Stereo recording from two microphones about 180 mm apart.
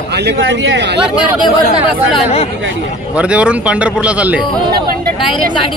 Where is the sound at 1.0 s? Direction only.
5° right (ahead or behind).